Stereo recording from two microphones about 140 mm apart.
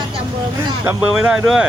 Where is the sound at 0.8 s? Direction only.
5° right (ahead or behind).